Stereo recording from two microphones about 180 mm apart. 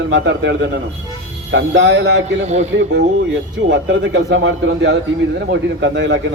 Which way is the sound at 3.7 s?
85° right.